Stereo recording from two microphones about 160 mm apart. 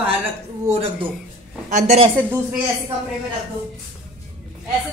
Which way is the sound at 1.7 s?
45° right (ahead or behind).